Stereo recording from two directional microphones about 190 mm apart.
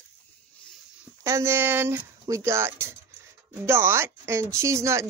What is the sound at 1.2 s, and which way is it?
Speech, 15° right (ahead or behind).